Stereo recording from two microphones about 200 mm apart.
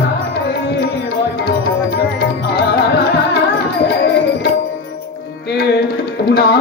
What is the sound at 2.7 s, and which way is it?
Music, 55° left (ahead or behind).